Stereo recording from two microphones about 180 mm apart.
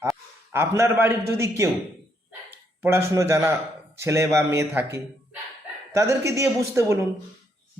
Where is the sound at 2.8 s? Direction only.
15° right (ahead or behind).